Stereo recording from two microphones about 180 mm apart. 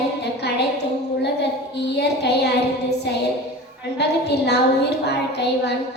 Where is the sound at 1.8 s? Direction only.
65° left (ahead or behind).